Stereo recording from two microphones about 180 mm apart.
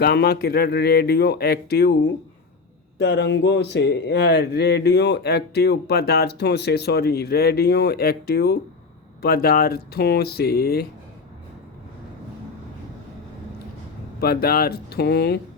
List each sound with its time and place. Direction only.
0.0 s speech: 65° left (ahead or behind)
3.0 s speech: 70° left (ahead or behind)
14.2 s speech: 60° left (ahead or behind)